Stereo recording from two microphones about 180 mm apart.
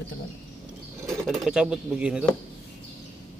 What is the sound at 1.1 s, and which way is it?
Speech, centre (ahead or behind).